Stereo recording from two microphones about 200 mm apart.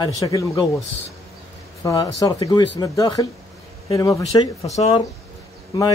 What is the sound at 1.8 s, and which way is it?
A man's voice, 15° left (ahead or behind).